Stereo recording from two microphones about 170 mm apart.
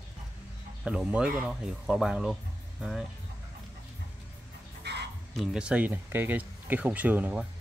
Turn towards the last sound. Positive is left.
turn(degrees=-10)  # may be behind; listen again after turning